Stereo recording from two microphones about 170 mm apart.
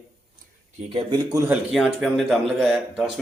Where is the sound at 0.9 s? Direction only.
20° right (ahead or behind).